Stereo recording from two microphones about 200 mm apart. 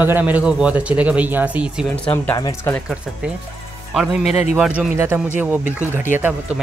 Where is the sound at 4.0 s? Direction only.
5° right (ahead or behind).